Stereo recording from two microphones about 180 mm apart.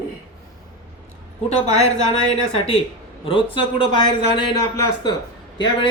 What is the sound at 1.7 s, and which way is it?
Speech, 35° left (ahead or behind).